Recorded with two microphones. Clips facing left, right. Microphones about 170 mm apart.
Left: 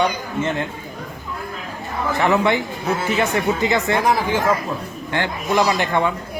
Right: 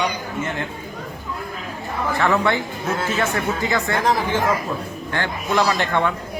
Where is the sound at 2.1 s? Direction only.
20° left (ahead or behind).